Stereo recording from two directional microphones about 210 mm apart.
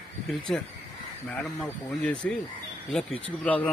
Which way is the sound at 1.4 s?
5° left (ahead or behind).